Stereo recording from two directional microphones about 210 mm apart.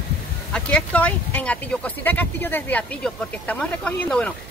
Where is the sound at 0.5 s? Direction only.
5° left (ahead or behind).